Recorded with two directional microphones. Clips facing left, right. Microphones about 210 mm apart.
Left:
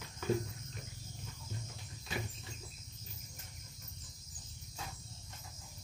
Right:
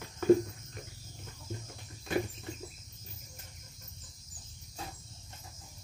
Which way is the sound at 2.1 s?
55° right (ahead or behind).